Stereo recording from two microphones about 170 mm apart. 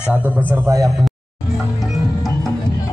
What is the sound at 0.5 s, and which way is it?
Speech, 20° right (ahead or behind).